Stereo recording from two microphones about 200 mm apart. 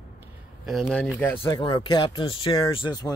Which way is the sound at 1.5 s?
25° left (ahead or behind).